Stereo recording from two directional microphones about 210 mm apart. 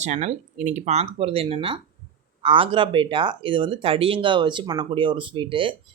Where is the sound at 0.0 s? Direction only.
30° right (ahead or behind).